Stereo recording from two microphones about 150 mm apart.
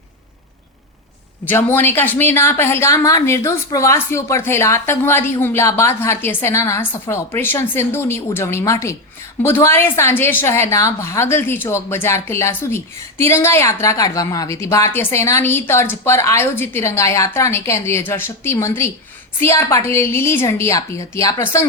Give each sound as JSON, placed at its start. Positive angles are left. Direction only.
{"t": 1.5, "sound": "a woman's voice", "side_deg": 15}